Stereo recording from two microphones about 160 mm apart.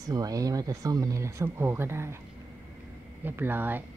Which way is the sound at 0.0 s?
25° right (ahead or behind).